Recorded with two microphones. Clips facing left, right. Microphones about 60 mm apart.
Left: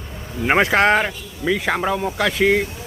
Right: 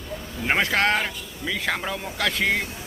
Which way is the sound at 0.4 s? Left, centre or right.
Left.